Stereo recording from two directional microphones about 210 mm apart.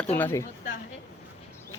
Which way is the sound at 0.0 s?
10° left (ahead or behind).